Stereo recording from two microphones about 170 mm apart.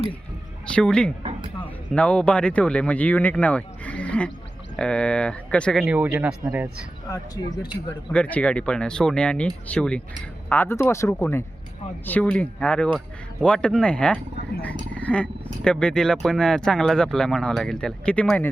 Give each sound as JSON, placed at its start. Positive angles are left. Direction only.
{"t": 0.8, "sound": "speech", "side_deg": 5}
{"t": 5.8, "sound": "speech", "side_deg": -5}
{"t": 7.1, "sound": "speech", "side_deg": 25}
{"t": 8.1, "sound": "speech", "side_deg": 5}